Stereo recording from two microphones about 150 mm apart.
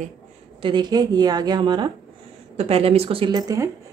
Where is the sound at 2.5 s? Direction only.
40° right (ahead or behind).